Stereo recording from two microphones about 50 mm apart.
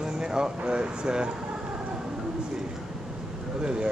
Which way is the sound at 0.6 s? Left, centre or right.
Centre.